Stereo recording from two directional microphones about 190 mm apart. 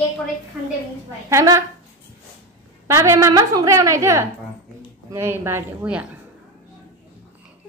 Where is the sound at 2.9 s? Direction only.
15° right (ahead or behind).